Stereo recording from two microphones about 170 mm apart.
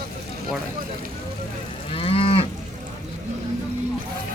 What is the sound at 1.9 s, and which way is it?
Moo, 35° left (ahead or behind).